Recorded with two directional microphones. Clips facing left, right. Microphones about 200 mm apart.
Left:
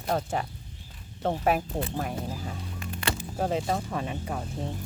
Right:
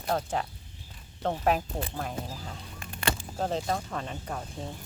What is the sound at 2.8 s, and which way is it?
Music, 50° right (ahead or behind).